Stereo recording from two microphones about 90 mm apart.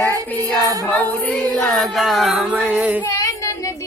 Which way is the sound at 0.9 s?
15° left (ahead or behind).